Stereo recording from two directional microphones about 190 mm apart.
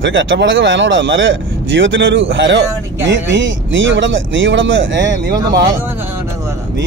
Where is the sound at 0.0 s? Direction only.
80° right.